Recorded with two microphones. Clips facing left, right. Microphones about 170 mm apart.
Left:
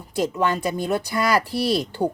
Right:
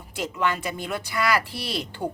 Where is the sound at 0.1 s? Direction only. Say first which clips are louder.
Left 5 dB; 40° left (ahead or behind).